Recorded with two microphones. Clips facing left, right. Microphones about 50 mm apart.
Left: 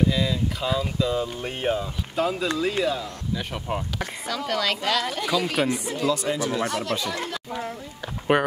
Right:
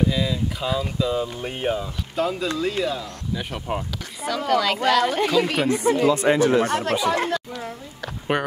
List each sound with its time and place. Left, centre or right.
0.1 s speech: centre
4.8 s speech: centre
5.1 s speech: right
8.0 s speech: centre